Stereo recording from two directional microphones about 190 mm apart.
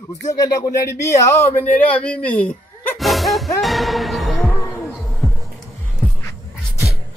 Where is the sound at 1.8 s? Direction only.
5° left (ahead or behind).